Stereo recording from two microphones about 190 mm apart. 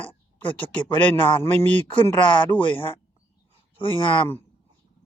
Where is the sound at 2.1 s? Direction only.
25° left (ahead or behind).